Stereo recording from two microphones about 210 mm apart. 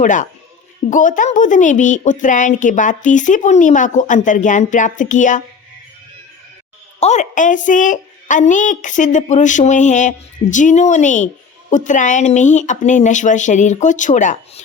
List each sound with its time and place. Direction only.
0.0 s a woman's voice: 35° left (ahead or behind)
7.0 s a woman's voice: 35° left (ahead or behind)